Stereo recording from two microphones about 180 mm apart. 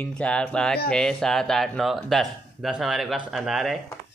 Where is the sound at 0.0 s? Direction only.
5° left (ahead or behind).